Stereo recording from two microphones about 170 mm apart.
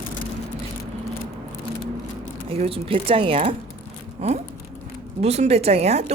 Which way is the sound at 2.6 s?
35° right (ahead or behind).